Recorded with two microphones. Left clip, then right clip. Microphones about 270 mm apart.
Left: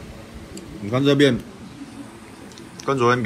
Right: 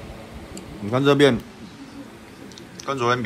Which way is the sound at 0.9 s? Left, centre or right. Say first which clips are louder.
Right 1 dB; right.